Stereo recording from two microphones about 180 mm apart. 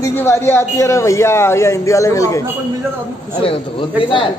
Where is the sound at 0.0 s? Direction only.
15° left (ahead or behind).